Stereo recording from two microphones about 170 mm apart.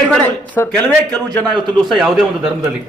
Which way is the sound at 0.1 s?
10° left (ahead or behind).